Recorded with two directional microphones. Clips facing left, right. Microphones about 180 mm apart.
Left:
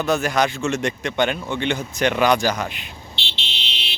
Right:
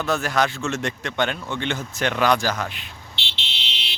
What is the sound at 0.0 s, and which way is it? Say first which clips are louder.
Speech: left 2 dB; 15° left (ahead or behind).